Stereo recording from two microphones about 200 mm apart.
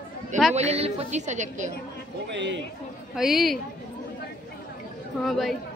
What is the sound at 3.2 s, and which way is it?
Speech, centre (ahead or behind).